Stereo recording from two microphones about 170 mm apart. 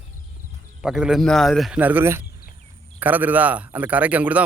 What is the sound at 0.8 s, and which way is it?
A man's voice, 5° right (ahead or behind).